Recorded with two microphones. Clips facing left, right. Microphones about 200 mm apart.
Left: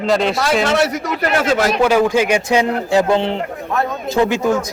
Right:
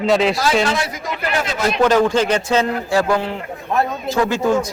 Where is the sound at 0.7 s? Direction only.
70° left (ahead or behind).